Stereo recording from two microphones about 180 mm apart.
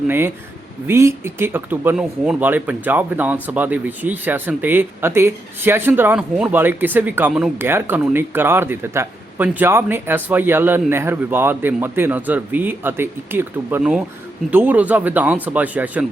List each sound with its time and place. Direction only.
0.9 s speech: 15° right (ahead or behind)